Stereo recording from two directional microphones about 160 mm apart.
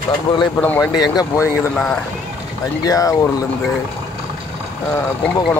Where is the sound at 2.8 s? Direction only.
20° left (ahead or behind).